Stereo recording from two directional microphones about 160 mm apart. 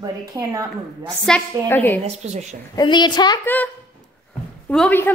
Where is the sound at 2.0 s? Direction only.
45° right (ahead or behind).